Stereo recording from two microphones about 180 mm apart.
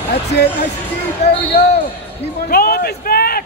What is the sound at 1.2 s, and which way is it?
Basketball bounce, 35° left (ahead or behind).